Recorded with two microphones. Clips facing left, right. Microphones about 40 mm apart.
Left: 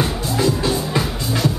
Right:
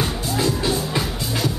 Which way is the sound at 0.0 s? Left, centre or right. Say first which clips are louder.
Left 3 dB; centre.